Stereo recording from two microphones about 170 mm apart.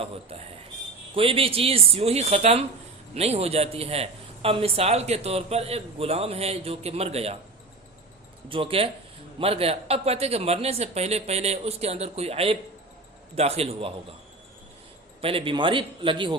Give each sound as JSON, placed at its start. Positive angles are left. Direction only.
{"t": 1.1, "sound": "a man's voice", "side_deg": -35}
{"t": 8.4, "sound": "a man's voice", "side_deg": -30}
{"t": 15.2, "sound": "a man's voice", "side_deg": -30}